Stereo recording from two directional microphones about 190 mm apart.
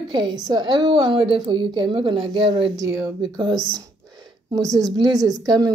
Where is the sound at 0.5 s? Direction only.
25° right (ahead or behind).